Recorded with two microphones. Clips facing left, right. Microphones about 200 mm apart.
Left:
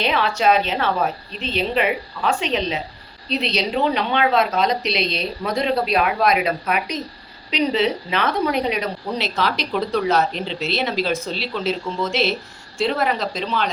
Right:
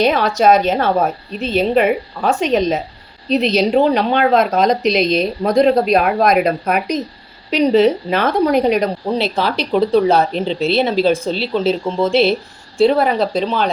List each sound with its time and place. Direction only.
0.0 s a woman's voice: 45° right (ahead or behind)
9.0 s speech: 30° right (ahead or behind)